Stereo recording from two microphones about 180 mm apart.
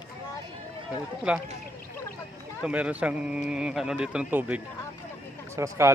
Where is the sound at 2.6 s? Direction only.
5° right (ahead or behind).